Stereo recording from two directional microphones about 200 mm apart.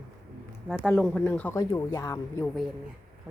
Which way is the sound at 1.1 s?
5° left (ahead or behind).